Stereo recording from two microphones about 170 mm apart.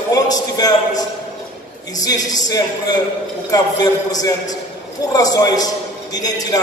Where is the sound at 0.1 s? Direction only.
20° left (ahead or behind).